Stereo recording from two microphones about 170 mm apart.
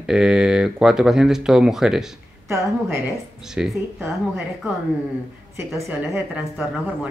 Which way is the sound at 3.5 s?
5° right (ahead or behind).